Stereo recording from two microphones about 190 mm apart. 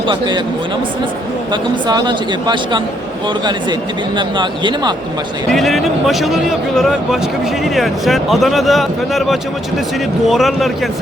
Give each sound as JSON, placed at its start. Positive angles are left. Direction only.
{"t": 0.1, "sound": "speech", "side_deg": -25}
{"t": 1.9, "sound": "speech", "side_deg": -20}
{"t": 5.5, "sound": "speech", "side_deg": 0}